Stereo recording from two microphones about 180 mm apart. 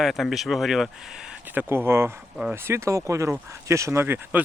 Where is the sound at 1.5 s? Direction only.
10° right (ahead or behind).